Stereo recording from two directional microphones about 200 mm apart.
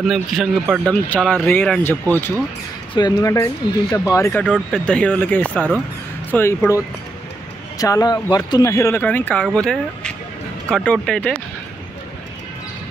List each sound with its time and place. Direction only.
0.0 s speech: centre (ahead or behind)
2.9 s speech: 20° left (ahead or behind)
7.8 s speech: 20° left (ahead or behind)